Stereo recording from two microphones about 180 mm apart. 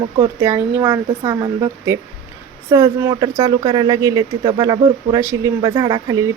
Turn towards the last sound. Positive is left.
turn(degrees=-20)  # may be behind; listen again after turning